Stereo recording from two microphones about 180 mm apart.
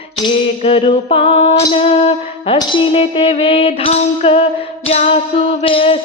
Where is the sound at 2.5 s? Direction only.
30° left (ahead or behind).